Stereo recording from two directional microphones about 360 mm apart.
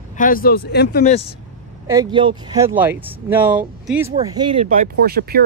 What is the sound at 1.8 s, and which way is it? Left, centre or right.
Speech, centre.